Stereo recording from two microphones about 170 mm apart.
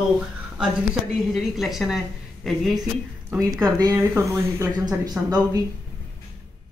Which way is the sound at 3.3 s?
20° right (ahead or behind).